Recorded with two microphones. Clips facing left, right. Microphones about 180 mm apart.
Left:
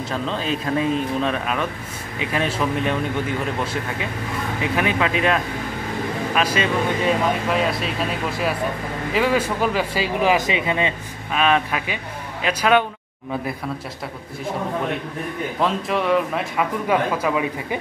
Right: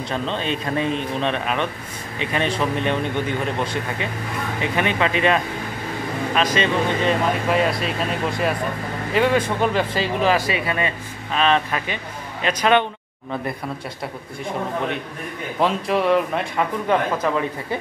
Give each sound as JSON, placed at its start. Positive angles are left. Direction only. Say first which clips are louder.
{"t": 0.1, "sound": "speech", "louder": "even", "side_deg": 0}
{"t": 11.3, "sound": "speech", "louder": "even", "side_deg": 5}
{"t": 15.6, "sound": "speech", "louder": "right 2 dB", "side_deg": 0}